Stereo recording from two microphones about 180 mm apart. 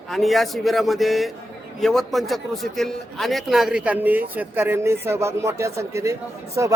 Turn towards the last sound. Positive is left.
turn(degrees=-15)  # may be behind; listen again after turning